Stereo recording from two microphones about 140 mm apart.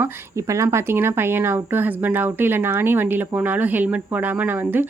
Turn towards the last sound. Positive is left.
turn(degrees=-15)  # may be behind; listen again after turning